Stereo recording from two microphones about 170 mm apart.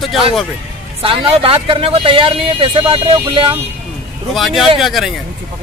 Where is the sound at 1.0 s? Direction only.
35° right (ahead or behind).